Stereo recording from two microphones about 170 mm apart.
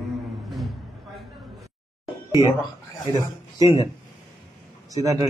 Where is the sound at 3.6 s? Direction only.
20° right (ahead or behind).